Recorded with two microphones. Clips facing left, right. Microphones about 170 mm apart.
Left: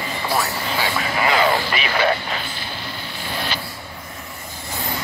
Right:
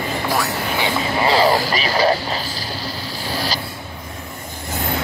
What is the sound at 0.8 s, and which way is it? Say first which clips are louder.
Speech: right 2 dB; 30° right (ahead or behind).